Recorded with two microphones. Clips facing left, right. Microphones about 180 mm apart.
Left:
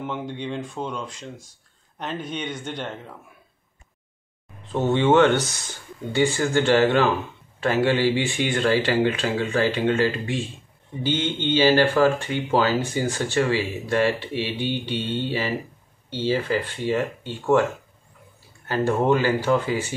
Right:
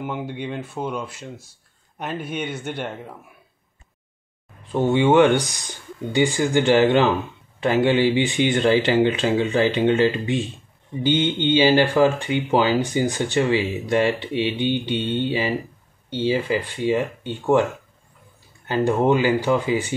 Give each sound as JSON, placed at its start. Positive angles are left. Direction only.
{"t": 0.0, "sound": "speech", "side_deg": -5}
{"t": 4.7, "sound": "speech", "side_deg": -10}
{"t": 18.7, "sound": "speech", "side_deg": -15}